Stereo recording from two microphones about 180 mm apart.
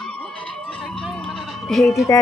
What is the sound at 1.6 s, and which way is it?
Speech, centre (ahead or behind).